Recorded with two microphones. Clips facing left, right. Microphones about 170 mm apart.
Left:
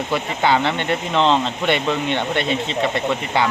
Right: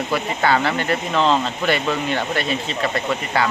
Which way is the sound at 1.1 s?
5° right (ahead or behind).